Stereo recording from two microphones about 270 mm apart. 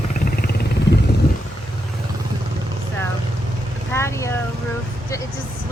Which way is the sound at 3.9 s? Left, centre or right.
Centre.